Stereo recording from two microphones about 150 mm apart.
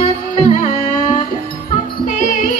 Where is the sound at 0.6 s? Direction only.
55° left (ahead or behind).